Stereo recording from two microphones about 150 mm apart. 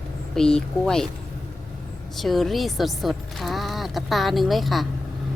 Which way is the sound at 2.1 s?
Centre (ahead or behind).